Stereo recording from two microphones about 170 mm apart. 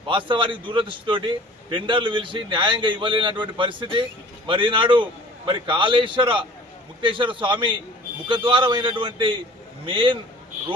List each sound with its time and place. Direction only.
0.3 s a man's voice: 30° right (ahead or behind)